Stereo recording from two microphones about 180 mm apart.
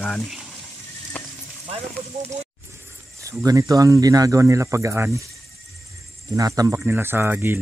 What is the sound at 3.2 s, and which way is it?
Speech, 20° right (ahead or behind).